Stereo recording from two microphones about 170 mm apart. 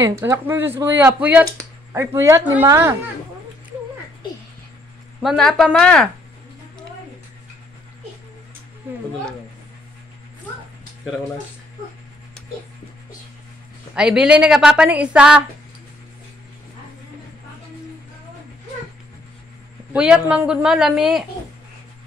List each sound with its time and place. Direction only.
0.0 s speech: 20° right (ahead or behind)
5.2 s a woman's voice: centre (ahead or behind)
13.9 s a woman's voice: 5° right (ahead or behind)
19.9 s a woman's voice: 5° right (ahead or behind)